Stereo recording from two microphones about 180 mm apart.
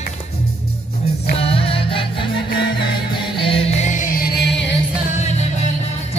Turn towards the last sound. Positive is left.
turn(degrees=65)  # may be behind; listen again after turning